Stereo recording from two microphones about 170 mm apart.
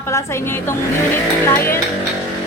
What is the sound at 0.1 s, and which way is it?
Speech, 15° left (ahead or behind).